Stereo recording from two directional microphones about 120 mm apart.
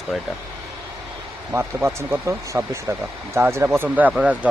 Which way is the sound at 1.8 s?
20° right (ahead or behind).